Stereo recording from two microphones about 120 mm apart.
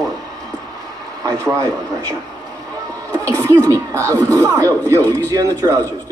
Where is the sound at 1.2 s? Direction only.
25° right (ahead or behind).